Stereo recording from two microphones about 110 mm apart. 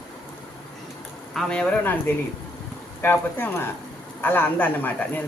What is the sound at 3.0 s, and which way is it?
Speech, 20° left (ahead or behind).